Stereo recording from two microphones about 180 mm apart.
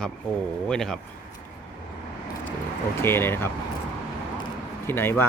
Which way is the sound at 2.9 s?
15° left (ahead or behind).